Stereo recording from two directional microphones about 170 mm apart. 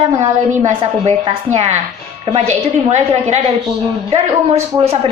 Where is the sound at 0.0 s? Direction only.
40° right (ahead or behind).